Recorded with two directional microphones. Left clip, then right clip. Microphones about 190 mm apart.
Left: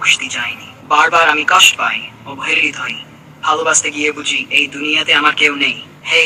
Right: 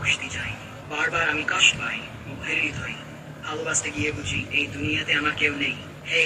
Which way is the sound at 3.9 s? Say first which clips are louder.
Left 11 dB; 45° left (ahead or behind).